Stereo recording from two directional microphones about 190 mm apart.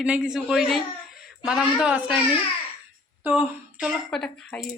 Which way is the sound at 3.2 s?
5° right (ahead or behind).